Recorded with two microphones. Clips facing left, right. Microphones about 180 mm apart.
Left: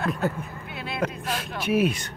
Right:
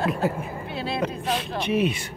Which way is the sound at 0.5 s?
30° right (ahead or behind).